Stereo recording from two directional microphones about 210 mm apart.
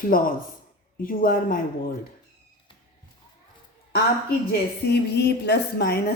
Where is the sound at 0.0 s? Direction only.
40° left (ahead or behind).